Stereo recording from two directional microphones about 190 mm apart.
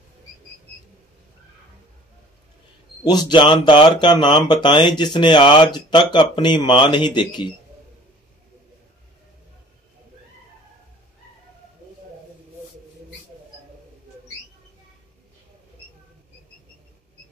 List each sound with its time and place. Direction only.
3.0 s speech: 20° left (ahead or behind)